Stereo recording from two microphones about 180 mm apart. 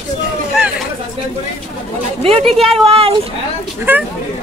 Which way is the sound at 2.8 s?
35° right (ahead or behind).